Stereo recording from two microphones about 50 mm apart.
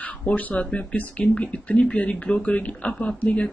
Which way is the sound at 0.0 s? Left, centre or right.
Left.